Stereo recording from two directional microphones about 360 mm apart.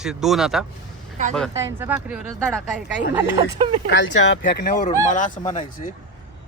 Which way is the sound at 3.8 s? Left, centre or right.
Left.